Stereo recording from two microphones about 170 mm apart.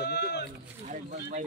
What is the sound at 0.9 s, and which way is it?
Speech, 45° right (ahead or behind).